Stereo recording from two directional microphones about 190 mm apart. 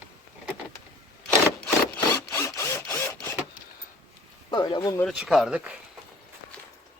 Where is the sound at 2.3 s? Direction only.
15° left (ahead or behind).